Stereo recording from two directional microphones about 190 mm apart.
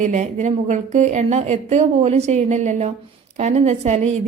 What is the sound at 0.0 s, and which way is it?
A woman's voice, 40° right (ahead or behind).